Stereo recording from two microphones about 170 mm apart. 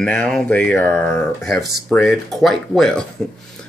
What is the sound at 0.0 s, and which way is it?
Speech, 5° left (ahead or behind).